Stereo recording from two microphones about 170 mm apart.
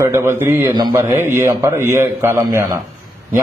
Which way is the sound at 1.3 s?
15° right (ahead or behind).